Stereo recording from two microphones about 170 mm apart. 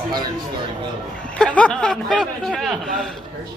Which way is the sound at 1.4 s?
5° left (ahead or behind).